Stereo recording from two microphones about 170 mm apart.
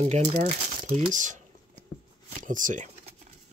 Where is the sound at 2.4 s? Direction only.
50° right (ahead or behind).